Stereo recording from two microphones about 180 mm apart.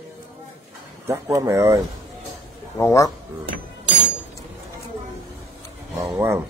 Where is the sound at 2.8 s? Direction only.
15° left (ahead or behind).